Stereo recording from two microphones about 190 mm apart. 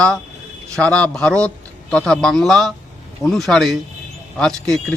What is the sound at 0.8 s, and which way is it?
A man's voice, 5° left (ahead or behind).